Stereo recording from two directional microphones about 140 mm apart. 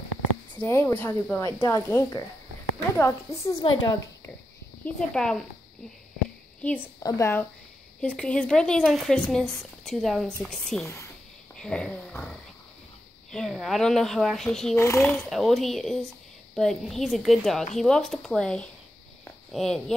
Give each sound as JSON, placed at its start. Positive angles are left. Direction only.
{"t": 0.6, "sound": "a woman's voice", "side_deg": 15}
{"t": 4.8, "sound": "speech", "side_deg": 5}
{"t": 6.6, "sound": "a woman's voice", "side_deg": 10}
{"t": 7.0, "sound": "a woman's voice", "side_deg": 20}
{"t": 8.0, "sound": "speech", "side_deg": 10}
{"t": 14.8, "sound": "a woman's voice", "side_deg": 15}
{"t": 15.2, "sound": "speech", "side_deg": 0}